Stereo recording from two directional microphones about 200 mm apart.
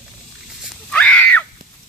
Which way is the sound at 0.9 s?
5° left (ahead or behind).